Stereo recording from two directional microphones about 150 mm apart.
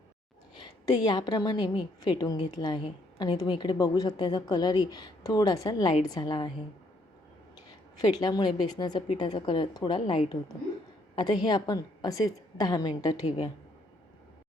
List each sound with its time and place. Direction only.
0.5 s a woman's voice: 30° left (ahead or behind)
7.9 s a woman's voice: 25° left (ahead or behind)